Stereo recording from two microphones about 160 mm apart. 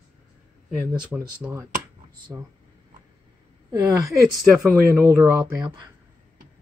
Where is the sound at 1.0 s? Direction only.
5° right (ahead or behind).